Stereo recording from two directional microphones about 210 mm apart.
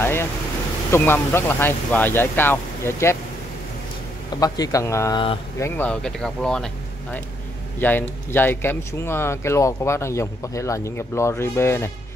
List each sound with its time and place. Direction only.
0.0 s vehicle: 10° left (ahead or behind)
0.9 s speech: 10° left (ahead or behind)
4.4 s speech: 15° left (ahead or behind)